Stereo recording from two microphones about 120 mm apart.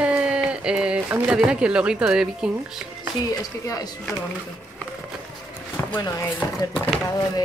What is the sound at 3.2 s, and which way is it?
Speech, 30° left (ahead or behind).